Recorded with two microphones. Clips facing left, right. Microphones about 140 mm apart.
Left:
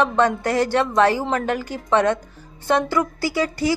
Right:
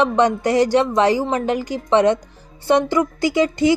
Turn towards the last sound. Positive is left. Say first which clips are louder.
# right 5 dB
turn(degrees=-20)  # may be behind; listen again after turning